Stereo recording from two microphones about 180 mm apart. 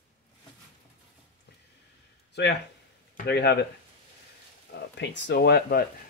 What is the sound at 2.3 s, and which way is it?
Speech, 70° left (ahead or behind).